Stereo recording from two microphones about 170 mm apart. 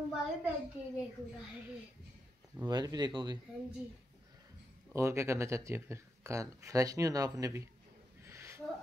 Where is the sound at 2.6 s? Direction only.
25° right (ahead or behind).